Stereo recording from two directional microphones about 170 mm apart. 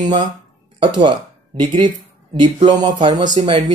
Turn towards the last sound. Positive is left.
turn(degrees=-35)  # may be behind; listen again after turning